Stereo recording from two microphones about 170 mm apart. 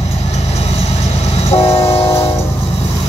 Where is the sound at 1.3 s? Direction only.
40° left (ahead or behind).